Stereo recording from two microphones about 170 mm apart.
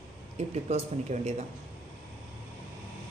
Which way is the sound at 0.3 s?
40° right (ahead or behind).